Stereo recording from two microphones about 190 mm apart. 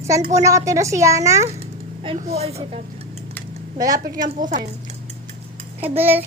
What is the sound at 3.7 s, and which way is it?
Speech, 20° right (ahead or behind).